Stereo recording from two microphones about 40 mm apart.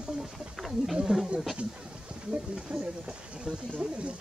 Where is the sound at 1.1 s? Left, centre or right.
Right.